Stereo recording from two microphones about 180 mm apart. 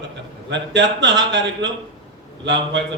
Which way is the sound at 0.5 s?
80° right.